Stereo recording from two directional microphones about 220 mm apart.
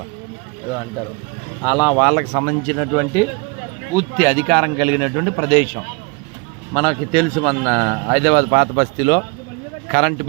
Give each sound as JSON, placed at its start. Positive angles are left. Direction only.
{"t": 1.6, "sound": "speech", "side_deg": 15}
{"t": 2.0, "sound": "a man's voice", "side_deg": 0}
{"t": 4.2, "sound": "a man's voice", "side_deg": 5}